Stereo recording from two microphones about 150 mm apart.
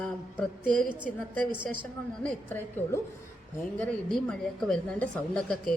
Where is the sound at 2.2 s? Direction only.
15° left (ahead or behind).